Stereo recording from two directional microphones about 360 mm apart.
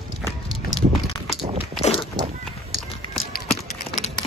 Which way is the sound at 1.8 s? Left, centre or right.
Centre.